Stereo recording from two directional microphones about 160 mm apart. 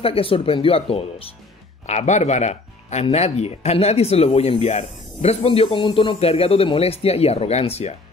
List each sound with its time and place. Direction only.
0.0 s speech: 35° left (ahead or behind)